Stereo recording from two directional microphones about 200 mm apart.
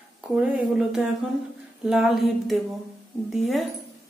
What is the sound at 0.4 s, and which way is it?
Speech, 5° right (ahead or behind).